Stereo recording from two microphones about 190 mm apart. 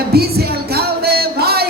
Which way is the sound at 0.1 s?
55° right (ahead or behind).